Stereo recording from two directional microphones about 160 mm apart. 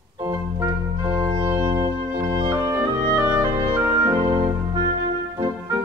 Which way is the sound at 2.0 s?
25° right (ahead or behind).